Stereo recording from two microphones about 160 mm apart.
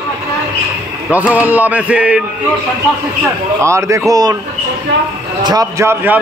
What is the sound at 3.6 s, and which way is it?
Speech, 20° right (ahead or behind).